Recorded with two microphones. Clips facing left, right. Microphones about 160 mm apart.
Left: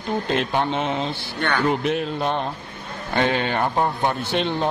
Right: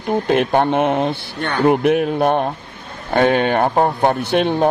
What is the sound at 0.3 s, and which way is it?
Speech, 55° right (ahead or behind).